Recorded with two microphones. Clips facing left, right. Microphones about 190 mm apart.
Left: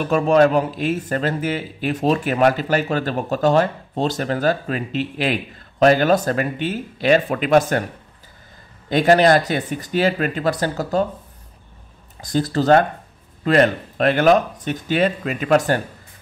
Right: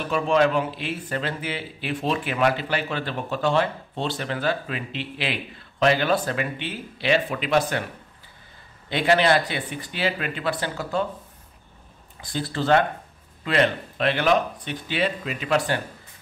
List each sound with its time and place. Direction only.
0.1 s speech: 45° left (ahead or behind)
8.8 s speech: 45° left (ahead or behind)
12.2 s speech: 40° left (ahead or behind)